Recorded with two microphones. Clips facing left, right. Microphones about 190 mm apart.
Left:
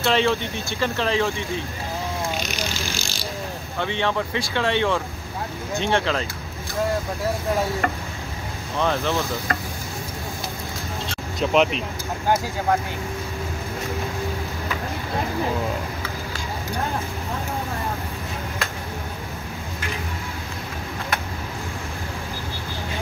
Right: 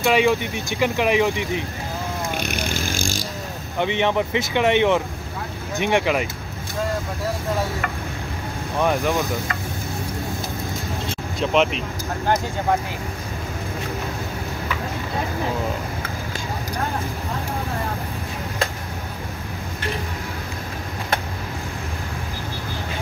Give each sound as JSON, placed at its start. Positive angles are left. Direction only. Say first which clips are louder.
{"t": 0.0, "sound": "speech", "louder": "right 3 dB", "side_deg": -10}
{"t": 2.3, "sound": "vehicle", "louder": "right 2 dB", "side_deg": -55}
{"t": 3.7, "sound": "speech", "louder": "right 4 dB", "side_deg": -15}
{"t": 8.7, "sound": "speech", "louder": "right 2 dB", "side_deg": -10}
{"t": 11.3, "sound": "speech", "louder": "even", "side_deg": 0}